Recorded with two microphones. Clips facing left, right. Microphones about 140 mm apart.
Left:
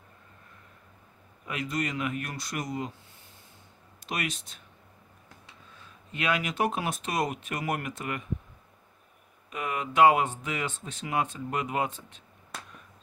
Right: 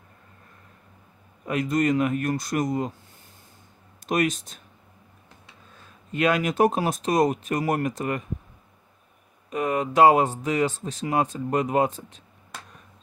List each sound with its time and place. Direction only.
1.4 s speech: 45° right (ahead or behind)
4.0 s speech: 45° right (ahead or behind)
5.8 s speech: 45° right (ahead or behind)
9.5 s speech: 40° right (ahead or behind)